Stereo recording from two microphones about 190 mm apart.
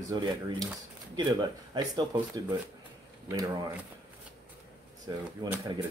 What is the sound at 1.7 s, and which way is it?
Speech, 25° right (ahead or behind).